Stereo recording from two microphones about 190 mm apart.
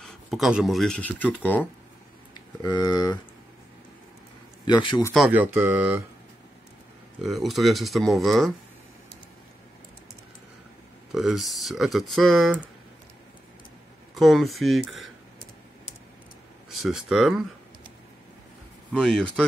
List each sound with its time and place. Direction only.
0.0 s speech: centre (ahead or behind)
2.3 s speech: 20° left (ahead or behind)
4.6 s speech: 25° left (ahead or behind)
5.1 s speech: 5° right (ahead or behind)
7.2 s speech: centre (ahead or behind)
11.1 s speech: centre (ahead or behind)
14.1 s speech: centre (ahead or behind)
16.7 s speech: centre (ahead or behind)
18.9 s speech: 5° left (ahead or behind)